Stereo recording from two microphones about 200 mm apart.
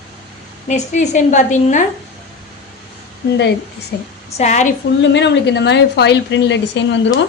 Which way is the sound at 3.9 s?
55° left (ahead or behind).